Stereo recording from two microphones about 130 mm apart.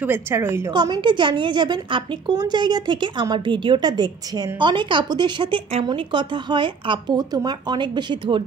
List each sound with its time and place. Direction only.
0.0 s a woman's voice: 15° right (ahead or behind)
0.7 s a woman's voice: 35° right (ahead or behind)